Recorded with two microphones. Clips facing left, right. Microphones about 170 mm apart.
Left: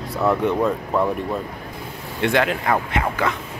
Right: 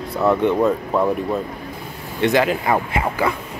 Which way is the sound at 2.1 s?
Centre (ahead or behind).